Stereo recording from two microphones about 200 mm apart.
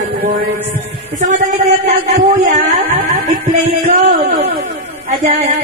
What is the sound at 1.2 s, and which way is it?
Speech, 35° right (ahead or behind).